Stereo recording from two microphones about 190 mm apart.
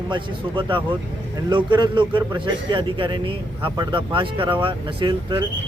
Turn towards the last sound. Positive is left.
turn(degrees=-25)  # may be behind; listen again after turning